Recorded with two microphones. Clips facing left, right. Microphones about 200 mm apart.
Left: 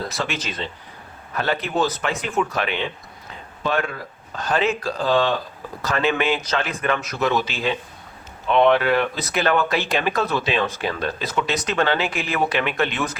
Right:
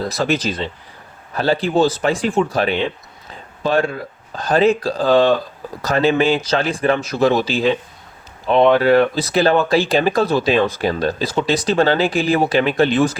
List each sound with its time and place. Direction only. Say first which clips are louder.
0.1 s a man's voice: right 8 dB; 35° right (ahead or behind)